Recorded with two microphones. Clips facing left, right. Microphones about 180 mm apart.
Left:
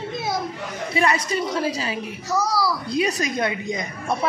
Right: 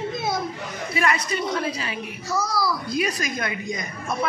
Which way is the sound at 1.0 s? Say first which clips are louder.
Left 3 dB; 30° left (ahead or behind).